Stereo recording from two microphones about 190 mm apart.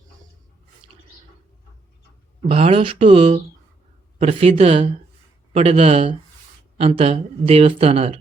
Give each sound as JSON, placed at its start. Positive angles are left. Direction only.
{"t": 2.5, "sound": "speech", "side_deg": -30}